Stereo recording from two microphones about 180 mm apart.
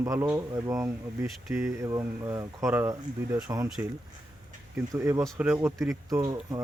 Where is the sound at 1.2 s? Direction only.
5° right (ahead or behind).